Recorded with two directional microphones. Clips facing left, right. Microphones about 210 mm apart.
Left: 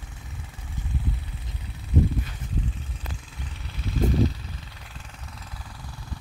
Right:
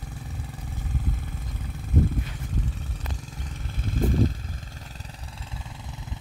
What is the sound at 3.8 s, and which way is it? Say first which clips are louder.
Vehicle: left 1 dB; 50° right (ahead or behind).